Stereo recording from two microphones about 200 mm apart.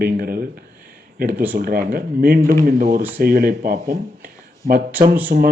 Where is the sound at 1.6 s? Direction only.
50° right (ahead or behind).